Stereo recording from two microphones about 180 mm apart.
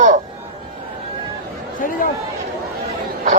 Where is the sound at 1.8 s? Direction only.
50° left (ahead or behind).